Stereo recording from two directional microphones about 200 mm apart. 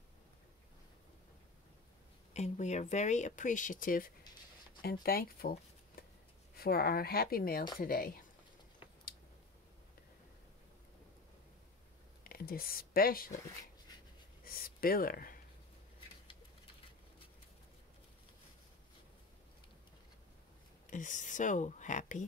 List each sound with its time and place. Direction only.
2.3 s speech: 35° left (ahead or behind)
6.0 s a sound: 50° left (ahead or behind)
6.5 s speech: 50° left (ahead or behind)
12.2 s speech: 50° left (ahead or behind)
14.4 s a sound: 45° left (ahead or behind)
20.9 s speech: 40° left (ahead or behind)